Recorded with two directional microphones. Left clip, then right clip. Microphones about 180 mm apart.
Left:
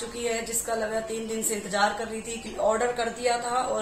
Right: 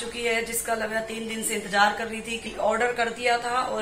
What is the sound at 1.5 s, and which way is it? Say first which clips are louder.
A man's voice: right 4 dB; centre (ahead or behind).